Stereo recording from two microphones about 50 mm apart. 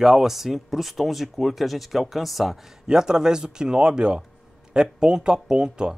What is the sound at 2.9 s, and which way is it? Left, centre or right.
Speech, centre.